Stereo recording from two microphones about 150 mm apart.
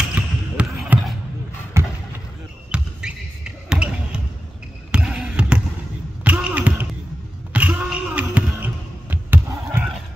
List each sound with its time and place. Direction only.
0.1 s basketball bounce: 10° right (ahead or behind)
2.7 s basketball bounce: 5° right (ahead or behind)
7.5 s a sound: 10° right (ahead or behind)